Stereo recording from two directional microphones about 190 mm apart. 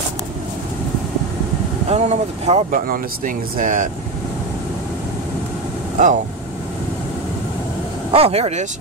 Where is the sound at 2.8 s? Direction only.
45° right (ahead or behind).